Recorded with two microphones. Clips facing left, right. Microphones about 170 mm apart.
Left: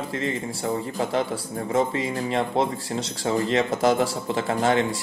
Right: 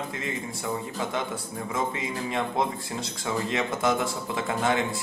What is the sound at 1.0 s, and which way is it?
Speech, 35° left (ahead or behind).